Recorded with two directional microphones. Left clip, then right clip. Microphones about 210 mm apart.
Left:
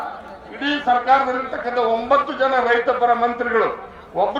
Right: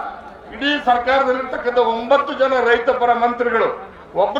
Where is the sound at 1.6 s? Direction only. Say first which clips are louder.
Right 3 dB; 40° right (ahead or behind).